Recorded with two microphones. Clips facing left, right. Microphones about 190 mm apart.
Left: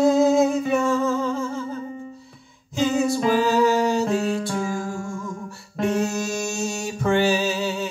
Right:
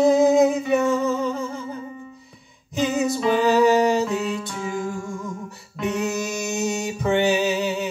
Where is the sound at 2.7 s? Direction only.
20° right (ahead or behind).